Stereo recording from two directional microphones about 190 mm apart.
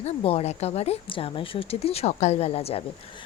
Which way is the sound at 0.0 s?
30° left (ahead or behind).